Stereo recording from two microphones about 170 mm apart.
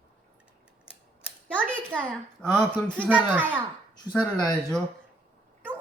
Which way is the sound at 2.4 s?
5° left (ahead or behind).